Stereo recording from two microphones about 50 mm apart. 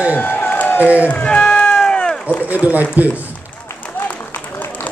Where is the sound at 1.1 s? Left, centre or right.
Left.